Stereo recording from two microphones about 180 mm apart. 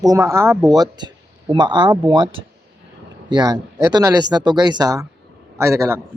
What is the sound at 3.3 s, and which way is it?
Speech, 25° right (ahead or behind).